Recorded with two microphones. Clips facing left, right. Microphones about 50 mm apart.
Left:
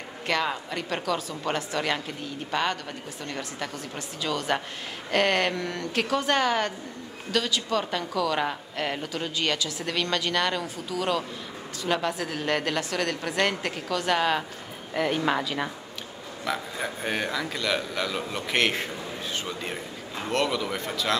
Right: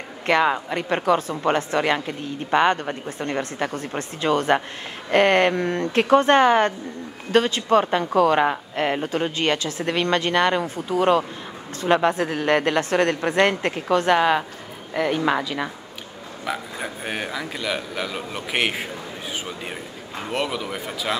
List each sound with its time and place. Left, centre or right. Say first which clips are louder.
0.3 s a woman's voice: right 8 dB; right
14.1 s a man's voice: right 4 dB; centre
15.0 s a man's voice: right 4 dB; centre